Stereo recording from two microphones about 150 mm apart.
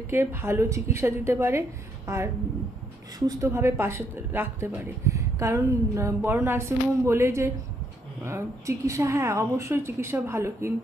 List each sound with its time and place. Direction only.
0.1 s a woman's voice: 15° right (ahead or behind)